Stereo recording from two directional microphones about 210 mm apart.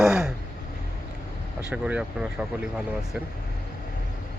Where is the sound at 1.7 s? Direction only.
5° right (ahead or behind).